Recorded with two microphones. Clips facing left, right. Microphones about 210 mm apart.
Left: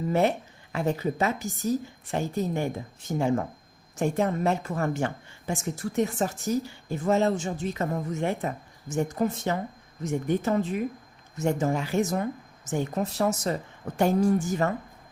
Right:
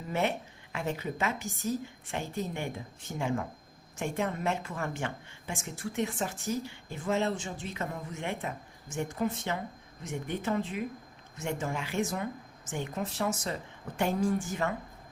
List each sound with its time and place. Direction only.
0.1 s a woman's voice: 40° left (ahead or behind)